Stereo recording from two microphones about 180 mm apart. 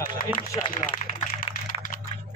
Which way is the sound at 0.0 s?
50° left (ahead or behind).